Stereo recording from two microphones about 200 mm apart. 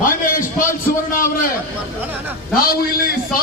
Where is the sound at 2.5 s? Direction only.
50° left (ahead or behind).